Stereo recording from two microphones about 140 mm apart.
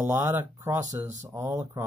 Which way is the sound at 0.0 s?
20° right (ahead or behind).